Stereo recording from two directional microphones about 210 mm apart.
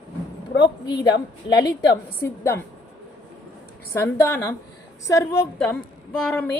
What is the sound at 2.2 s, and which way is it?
Speech, 10° left (ahead or behind).